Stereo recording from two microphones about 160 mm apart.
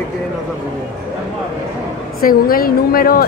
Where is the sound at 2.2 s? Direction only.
65° left (ahead or behind).